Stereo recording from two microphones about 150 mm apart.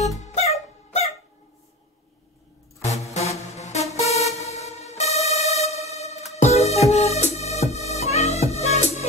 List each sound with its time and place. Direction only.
0.2 s music: 50° left (ahead or behind)
2.8 s music: 50° left (ahead or behind)